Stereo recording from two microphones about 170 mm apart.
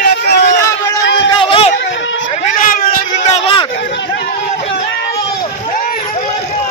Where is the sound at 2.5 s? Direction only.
55° left (ahead or behind).